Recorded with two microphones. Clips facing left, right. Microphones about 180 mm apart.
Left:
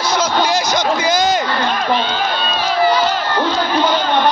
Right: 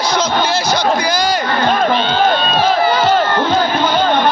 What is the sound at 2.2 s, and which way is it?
Crowd, 50° right (ahead or behind).